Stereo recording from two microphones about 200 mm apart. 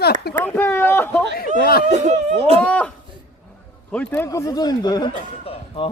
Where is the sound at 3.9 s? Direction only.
10° left (ahead or behind).